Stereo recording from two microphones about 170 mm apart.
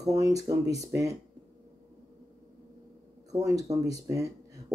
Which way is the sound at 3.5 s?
20° right (ahead or behind).